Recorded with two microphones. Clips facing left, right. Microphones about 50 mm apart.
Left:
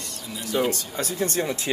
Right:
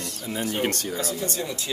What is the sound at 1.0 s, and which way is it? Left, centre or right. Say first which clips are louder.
Speech: left 3 dB; left.